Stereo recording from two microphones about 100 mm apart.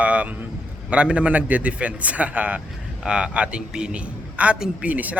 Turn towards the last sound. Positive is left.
turn(degrees=-15)  # may be behind; listen again after turning